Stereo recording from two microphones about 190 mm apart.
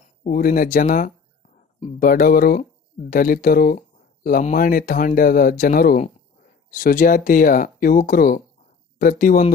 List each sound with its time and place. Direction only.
0.3 s speech: 50° left (ahead or behind)